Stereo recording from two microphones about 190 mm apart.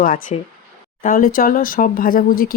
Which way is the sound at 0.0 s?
45° left (ahead or behind).